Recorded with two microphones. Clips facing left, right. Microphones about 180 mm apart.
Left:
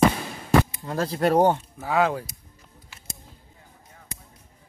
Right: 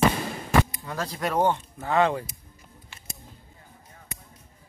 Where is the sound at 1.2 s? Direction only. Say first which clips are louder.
Left 5 dB; 40° left (ahead or behind).